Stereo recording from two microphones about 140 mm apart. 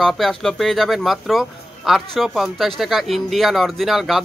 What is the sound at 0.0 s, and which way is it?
Speech, centre (ahead or behind).